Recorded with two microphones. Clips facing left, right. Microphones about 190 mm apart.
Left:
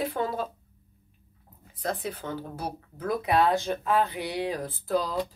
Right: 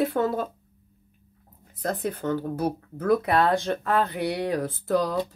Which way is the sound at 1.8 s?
50° right (ahead or behind).